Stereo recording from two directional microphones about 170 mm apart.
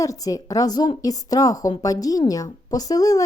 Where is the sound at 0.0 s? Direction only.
20° left (ahead or behind).